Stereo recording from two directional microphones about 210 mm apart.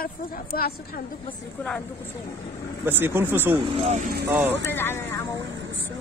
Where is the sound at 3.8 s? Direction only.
35° right (ahead or behind).